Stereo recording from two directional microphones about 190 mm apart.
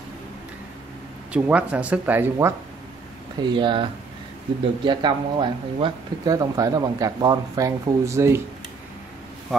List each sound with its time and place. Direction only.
1.3 s speech: 5° right (ahead or behind)
3.4 s speech: 25° right (ahead or behind)